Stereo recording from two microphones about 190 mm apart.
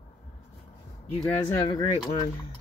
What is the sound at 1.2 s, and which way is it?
Speech, 15° left (ahead or behind).